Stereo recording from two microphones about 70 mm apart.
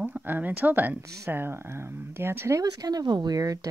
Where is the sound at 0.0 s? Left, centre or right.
Right.